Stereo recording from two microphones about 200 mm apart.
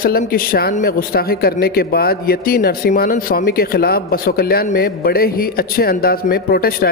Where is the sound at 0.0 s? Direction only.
50° left (ahead or behind).